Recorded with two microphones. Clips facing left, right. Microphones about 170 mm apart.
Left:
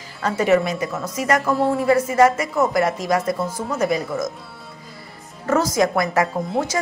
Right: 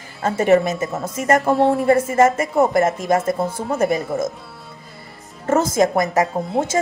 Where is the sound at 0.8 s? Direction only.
25° right (ahead or behind).